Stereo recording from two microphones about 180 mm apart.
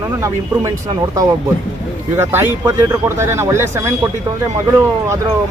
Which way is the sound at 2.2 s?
10° right (ahead or behind).